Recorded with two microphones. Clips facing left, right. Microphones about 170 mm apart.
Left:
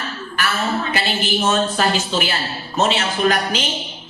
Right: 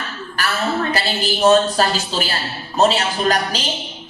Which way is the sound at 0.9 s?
35° right (ahead or behind).